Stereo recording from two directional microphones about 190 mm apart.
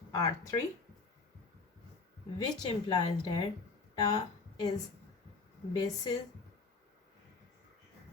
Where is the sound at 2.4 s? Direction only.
20° left (ahead or behind).